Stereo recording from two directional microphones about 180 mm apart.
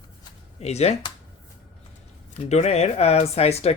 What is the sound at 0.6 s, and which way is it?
Speech, 35° left (ahead or behind).